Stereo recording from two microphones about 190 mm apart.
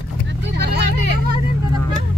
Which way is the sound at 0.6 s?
60° right (ahead or behind).